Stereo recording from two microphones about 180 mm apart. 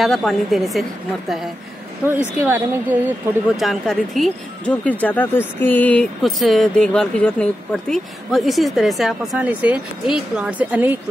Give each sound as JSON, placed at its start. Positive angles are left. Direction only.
{"t": 0.0, "sound": "speech", "side_deg": 0}
{"t": 2.0, "sound": "a woman's voice", "side_deg": -10}
{"t": 3.5, "sound": "speech", "side_deg": 0}